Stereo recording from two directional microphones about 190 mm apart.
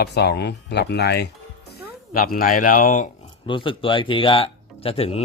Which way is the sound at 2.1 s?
50° left (ahead or behind).